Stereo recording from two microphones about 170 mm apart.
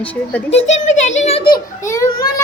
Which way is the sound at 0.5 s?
40° left (ahead or behind).